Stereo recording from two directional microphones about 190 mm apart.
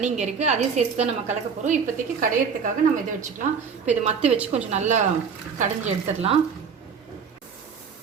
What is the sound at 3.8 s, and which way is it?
A woman's voice, 35° right (ahead or behind).